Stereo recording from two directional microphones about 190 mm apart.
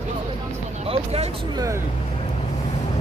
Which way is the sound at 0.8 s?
30° right (ahead or behind).